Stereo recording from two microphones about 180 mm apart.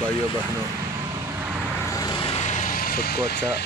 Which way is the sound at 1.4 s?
10° right (ahead or behind).